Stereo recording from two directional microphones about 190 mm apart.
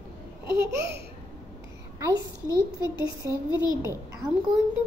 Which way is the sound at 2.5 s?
20° left (ahead or behind).